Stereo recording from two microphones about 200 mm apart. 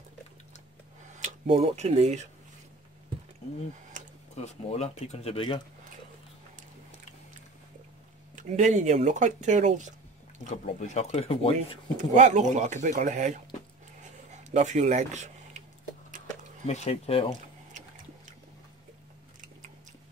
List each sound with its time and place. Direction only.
1.2 s speech: 30° right (ahead or behind)
3.9 s tick-tock: 40° right (ahead or behind)
4.6 s speech: 30° left (ahead or behind)
8.4 s speech: 40° right (ahead or behind)
10.4 s speech: 35° left (ahead or behind)
12.0 s speech: 35° right (ahead or behind)
16.6 s speech: 30° left (ahead or behind)